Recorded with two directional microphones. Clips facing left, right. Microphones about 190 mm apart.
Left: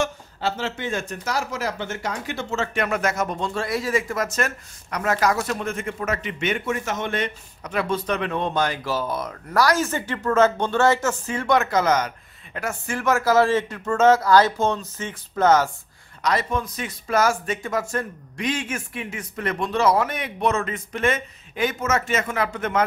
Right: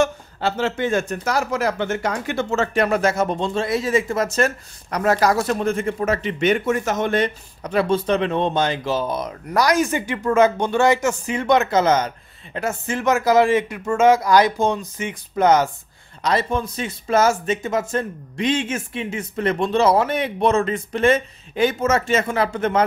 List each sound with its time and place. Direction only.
0.0 s speech: 55° right (ahead or behind)
2.7 s speech: 35° right (ahead or behind); by 15.7 s 15° right (ahead or behind)
16.2 s speech: 30° right (ahead or behind)